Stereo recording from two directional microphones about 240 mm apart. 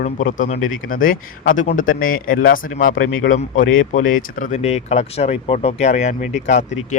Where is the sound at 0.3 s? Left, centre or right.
Left.